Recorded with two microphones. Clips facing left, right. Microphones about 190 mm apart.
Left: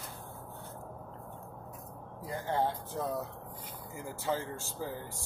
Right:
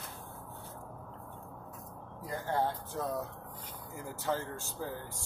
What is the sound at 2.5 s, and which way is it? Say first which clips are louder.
Speech: left 1 dB; 15° left (ahead or behind).